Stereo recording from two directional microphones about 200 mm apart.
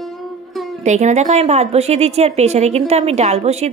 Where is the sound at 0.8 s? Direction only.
35° right (ahead or behind).